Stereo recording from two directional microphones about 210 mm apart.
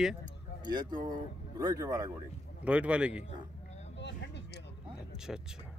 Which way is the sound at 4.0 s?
55° left (ahead or behind).